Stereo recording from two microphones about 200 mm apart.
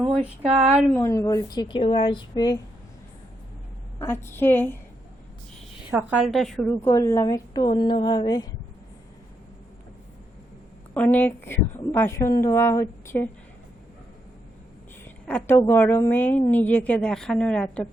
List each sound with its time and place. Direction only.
0.9 s a woman's voice: 15° left (ahead or behind)
3.9 s a woman's voice: 10° left (ahead or behind)
5.9 s a woman's voice: 10° right (ahead or behind)
6.2 s a woman's voice: centre (ahead or behind); by 8.4 s 20° left (ahead or behind)
10.9 s a woman's voice: 5° left (ahead or behind)
15.0 s a woman's voice: 10° left (ahead or behind)